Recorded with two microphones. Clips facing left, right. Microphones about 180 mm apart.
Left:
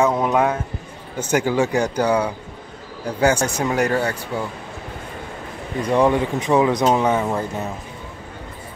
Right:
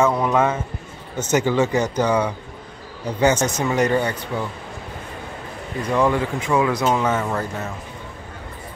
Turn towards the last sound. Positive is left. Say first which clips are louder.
# left 2 dB
turn(degrees=15)  # may be behind; listen again after turning